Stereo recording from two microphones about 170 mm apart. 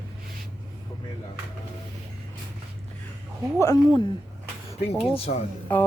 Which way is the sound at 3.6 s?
20° left (ahead or behind).